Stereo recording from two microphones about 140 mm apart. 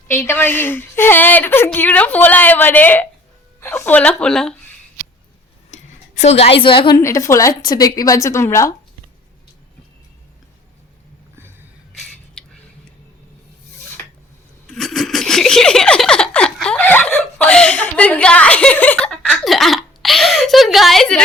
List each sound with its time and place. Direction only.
0.1 s a woman's voice: 15° left (ahead or behind)
6.2 s a woman's voice: 45° left (ahead or behind)
6.9 s a woman's voice: 20° left (ahead or behind)
11.9 s a sound: 5° left (ahead or behind)
14.7 s laughter: centre (ahead or behind)
17.2 s chuckle: 5° left (ahead or behind)